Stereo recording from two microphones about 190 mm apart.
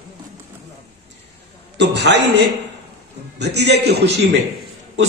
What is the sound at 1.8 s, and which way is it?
A man's voice, 65° right (ahead or behind).